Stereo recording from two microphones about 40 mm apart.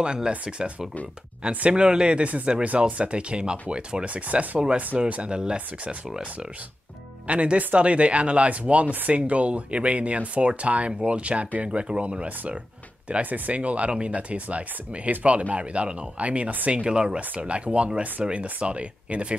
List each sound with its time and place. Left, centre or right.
0.0 s speech: right
4.1 s speech: right
7.2 s speech: right
17.2 s speech: right